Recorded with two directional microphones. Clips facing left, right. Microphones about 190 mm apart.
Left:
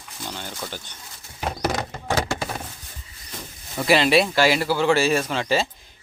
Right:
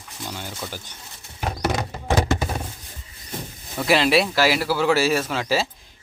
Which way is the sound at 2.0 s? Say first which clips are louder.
Right 4 dB; 20° right (ahead or behind).